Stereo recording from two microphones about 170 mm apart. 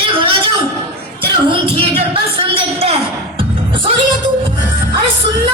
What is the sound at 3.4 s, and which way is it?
Music, 30° right (ahead or behind).